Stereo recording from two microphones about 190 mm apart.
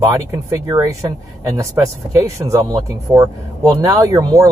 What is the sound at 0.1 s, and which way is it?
Speech, 15° right (ahead or behind).